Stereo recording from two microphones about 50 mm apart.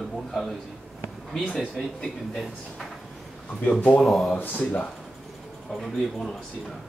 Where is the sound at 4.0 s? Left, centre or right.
Centre.